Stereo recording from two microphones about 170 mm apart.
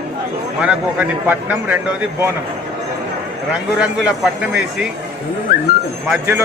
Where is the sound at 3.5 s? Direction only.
5° right (ahead or behind).